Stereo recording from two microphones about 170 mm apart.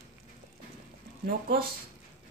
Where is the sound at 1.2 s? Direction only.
60° right (ahead or behind).